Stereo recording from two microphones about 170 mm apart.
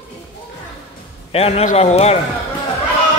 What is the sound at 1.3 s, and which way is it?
Speech, 35° left (ahead or behind).